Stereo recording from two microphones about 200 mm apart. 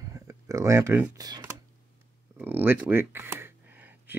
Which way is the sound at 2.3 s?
10° right (ahead or behind).